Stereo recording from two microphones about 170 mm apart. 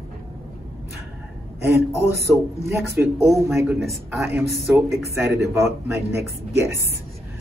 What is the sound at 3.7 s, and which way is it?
A man's voice, 5° right (ahead or behind).